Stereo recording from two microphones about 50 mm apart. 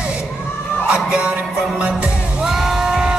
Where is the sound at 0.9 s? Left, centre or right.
Right.